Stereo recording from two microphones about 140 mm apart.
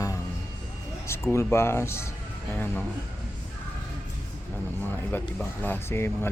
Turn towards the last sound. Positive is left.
turn(degrees=15)  # may be behind; listen again after turning